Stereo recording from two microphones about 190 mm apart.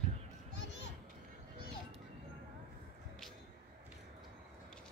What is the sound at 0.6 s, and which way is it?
Children playing, 65° left (ahead or behind).